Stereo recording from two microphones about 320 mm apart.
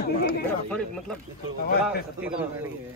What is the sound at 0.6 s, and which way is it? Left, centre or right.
Speech, centre.